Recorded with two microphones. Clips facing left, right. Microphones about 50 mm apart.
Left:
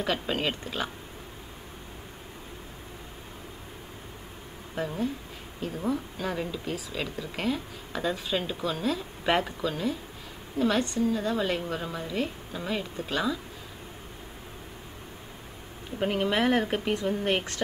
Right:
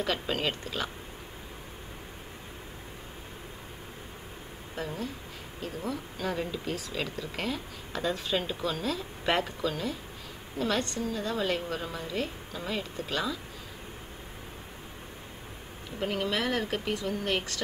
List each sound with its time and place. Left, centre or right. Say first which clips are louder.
0.0 s a woman's voice: left 1 dB; centre
4.7 s a woman's voice: left 5 dB; centre
16.0 s speech: left 4 dB; left